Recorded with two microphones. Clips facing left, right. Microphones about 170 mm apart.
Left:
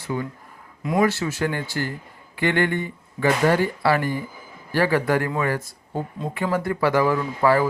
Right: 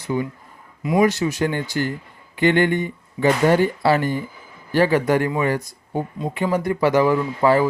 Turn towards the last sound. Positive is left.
turn(degrees=-20)  # may be behind; listen again after turning